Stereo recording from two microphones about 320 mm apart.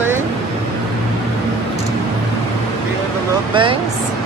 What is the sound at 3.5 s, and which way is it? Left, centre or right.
Speech, centre.